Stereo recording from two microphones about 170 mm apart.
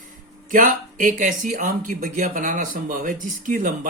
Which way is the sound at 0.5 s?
50° right (ahead or behind).